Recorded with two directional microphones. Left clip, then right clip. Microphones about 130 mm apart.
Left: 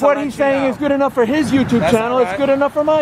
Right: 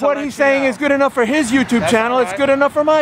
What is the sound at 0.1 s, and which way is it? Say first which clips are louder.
Speech: right 1 dB; 20° right (ahead or behind).